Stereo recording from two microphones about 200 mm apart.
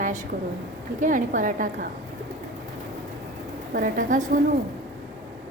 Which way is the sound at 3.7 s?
45° right (ahead or behind).